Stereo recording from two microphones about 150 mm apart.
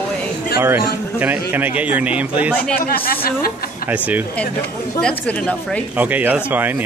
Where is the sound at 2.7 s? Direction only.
80° left.